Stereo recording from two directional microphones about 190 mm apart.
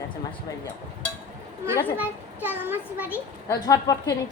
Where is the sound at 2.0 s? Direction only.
10° right (ahead or behind).